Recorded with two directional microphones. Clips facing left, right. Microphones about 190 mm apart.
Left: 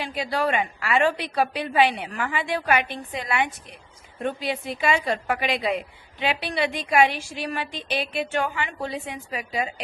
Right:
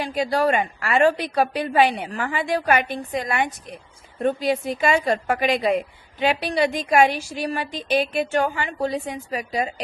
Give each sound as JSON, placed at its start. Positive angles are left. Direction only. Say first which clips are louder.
{"t": 0.0, "sound": "a woman's voice", "louder": "right 4 dB", "side_deg": -45}